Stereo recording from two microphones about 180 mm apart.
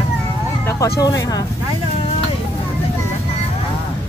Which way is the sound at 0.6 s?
15° left (ahead or behind).